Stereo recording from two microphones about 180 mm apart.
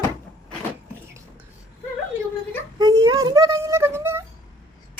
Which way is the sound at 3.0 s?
20° right (ahead or behind).